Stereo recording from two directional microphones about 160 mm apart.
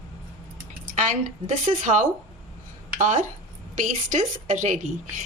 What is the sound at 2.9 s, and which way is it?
A woman's voice, 50° right (ahead or behind).